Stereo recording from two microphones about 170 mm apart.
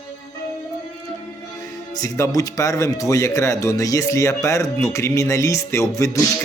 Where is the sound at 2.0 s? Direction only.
20° left (ahead or behind).